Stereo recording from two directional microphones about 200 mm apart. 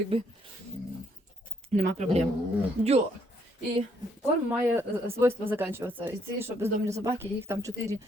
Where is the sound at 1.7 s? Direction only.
35° right (ahead or behind).